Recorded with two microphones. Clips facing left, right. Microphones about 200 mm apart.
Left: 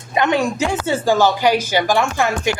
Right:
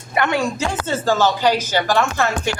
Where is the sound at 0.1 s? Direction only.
20° left (ahead or behind).